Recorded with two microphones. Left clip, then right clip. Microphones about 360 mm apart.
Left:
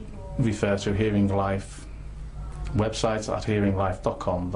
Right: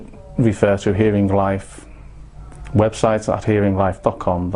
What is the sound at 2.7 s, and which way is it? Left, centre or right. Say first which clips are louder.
Speech: right 9 dB; right.